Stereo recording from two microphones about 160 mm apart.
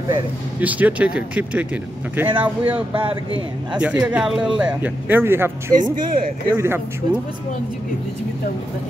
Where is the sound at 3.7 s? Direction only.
10° right (ahead or behind).